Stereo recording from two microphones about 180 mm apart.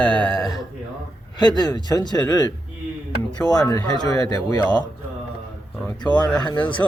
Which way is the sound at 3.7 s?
20° left (ahead or behind).